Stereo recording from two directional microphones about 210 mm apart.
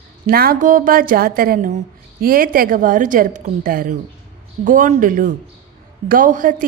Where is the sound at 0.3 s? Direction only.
45° right (ahead or behind).